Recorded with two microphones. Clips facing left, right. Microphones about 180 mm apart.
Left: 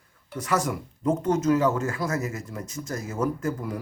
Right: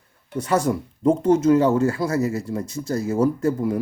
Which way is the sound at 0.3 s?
30° right (ahead or behind).